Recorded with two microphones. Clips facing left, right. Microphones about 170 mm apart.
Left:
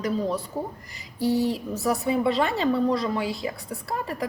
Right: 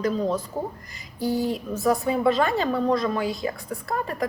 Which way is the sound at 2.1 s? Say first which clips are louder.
Left 1 dB; 25° left (ahead or behind).